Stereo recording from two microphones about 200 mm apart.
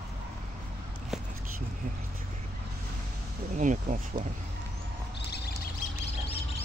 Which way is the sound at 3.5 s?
40° right (ahead or behind).